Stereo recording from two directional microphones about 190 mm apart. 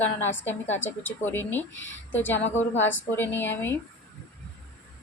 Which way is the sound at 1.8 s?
85° left.